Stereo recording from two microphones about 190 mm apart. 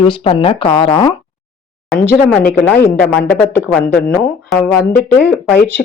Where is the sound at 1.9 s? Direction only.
10° left (ahead or behind).